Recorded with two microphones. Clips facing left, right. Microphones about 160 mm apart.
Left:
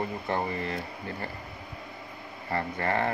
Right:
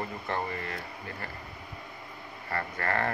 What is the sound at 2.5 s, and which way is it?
Speech, 20° left (ahead or behind).